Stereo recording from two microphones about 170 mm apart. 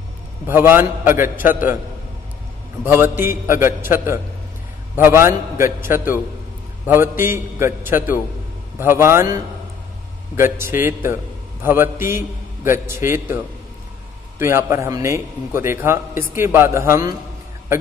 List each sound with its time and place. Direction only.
0.5 s a man's voice: 10° right (ahead or behind)
2.8 s a man's voice: 15° right (ahead or behind)
14.4 s a man's voice: 15° right (ahead or behind)